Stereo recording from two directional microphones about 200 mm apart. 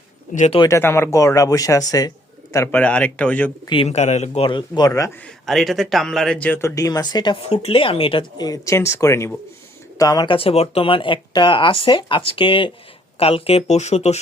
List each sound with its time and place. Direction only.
0.3 s speech: 35° left (ahead or behind)
0.6 s speech: 15° left (ahead or behind)
3.7 s speech: 30° left (ahead or behind); by 5.3 s 15° left (ahead or behind)
5.5 s speech: centre (ahead or behind); by 14.2 s 35° left (ahead or behind)